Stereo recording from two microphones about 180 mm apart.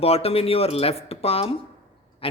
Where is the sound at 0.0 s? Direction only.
35° left (ahead or behind).